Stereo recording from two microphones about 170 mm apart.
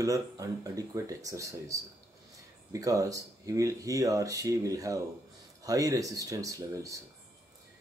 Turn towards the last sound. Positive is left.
turn(degrees=-20)  # may be behind; listen again after turning